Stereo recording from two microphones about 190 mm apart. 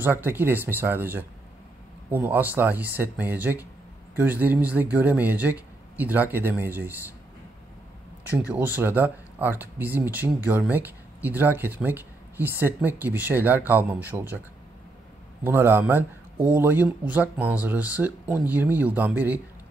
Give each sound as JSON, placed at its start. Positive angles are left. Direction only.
{"t": 0.0, "sound": "speech", "side_deg": -10}
{"t": 8.2, "sound": "speech", "side_deg": -10}
{"t": 15.4, "sound": "speech", "side_deg": -10}